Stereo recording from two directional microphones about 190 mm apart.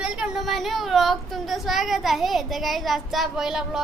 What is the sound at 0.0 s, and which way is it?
Speech, 5° right (ahead or behind).